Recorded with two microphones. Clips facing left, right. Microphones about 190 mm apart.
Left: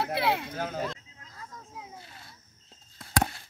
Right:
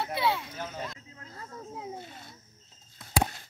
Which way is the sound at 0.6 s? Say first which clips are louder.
Left 5 dB; 55° left (ahead or behind).